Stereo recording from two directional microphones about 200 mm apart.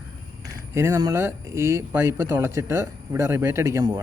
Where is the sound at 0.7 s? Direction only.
15° right (ahead or behind).